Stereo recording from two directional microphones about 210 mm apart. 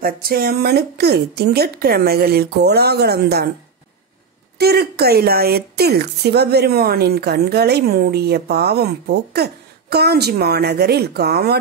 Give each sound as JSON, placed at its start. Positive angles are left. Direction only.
{"t": 0.0, "sound": "a woman's voice", "side_deg": -45}
{"t": 4.6, "sound": "a woman's voice", "side_deg": -50}